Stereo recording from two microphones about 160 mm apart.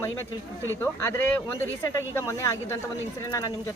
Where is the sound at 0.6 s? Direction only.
15° left (ahead or behind).